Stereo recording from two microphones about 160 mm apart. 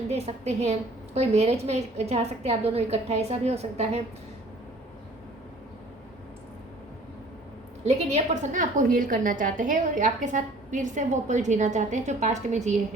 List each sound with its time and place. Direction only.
0.1 s a woman's voice: 40° right (ahead or behind)
7.9 s a woman's voice: 45° right (ahead or behind)